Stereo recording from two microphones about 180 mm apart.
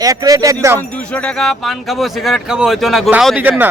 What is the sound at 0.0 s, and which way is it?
Speech, 20° right (ahead or behind).